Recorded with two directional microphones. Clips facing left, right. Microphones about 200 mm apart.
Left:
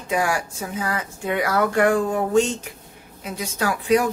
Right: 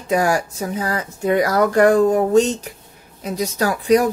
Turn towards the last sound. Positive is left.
turn(degrees=-35)  # may be behind; listen again after turning